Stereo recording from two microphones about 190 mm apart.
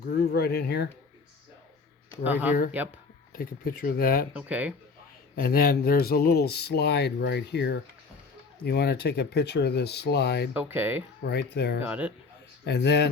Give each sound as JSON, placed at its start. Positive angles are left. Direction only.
{"t": 0.0, "sound": "speech", "side_deg": 55}
{"t": 2.2, "sound": "speech", "side_deg": -10}
{"t": 3.3, "sound": "speech", "side_deg": 50}
{"t": 4.4, "sound": "speech", "side_deg": -5}
{"t": 5.4, "sound": "speech", "side_deg": 50}
{"t": 10.5, "sound": "speech", "side_deg": -10}
{"t": 11.3, "sound": "speech", "side_deg": 60}
{"t": 11.8, "sound": "speech", "side_deg": -5}
{"t": 12.6, "sound": "speech", "side_deg": 60}